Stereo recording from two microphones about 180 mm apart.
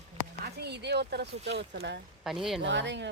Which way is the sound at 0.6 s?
70° right (ahead or behind).